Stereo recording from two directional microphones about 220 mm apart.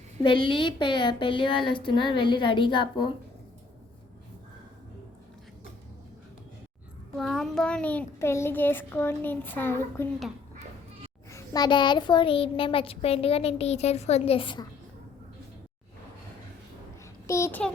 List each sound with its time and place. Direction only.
0.2 s a child's voice: 20° left (ahead or behind)
7.2 s a child's voice: centre (ahead or behind)
11.3 s a child's voice: 15° left (ahead or behind)
17.2 s a child's voice: 10° left (ahead or behind)